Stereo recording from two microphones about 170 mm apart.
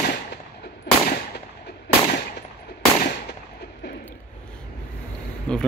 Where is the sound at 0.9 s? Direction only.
70° left (ahead or behind).